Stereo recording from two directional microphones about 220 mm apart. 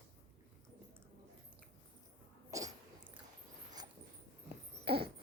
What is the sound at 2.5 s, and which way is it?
Cough, 15° right (ahead or behind).